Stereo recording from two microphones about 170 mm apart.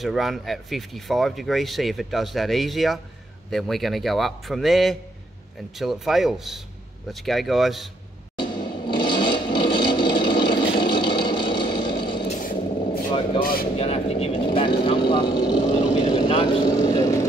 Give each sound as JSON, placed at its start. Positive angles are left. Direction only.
{"t": 0.0, "sound": "speech", "side_deg": 0}
{"t": 8.4, "sound": "a sound", "side_deg": 30}
{"t": 12.3, "sound": "vehicle", "side_deg": 55}
{"t": 13.4, "sound": "speech", "side_deg": 60}
{"t": 13.7, "sound": "vehicle", "side_deg": 35}